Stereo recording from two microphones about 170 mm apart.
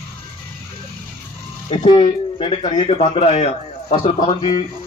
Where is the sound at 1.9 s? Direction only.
30° left (ahead or behind).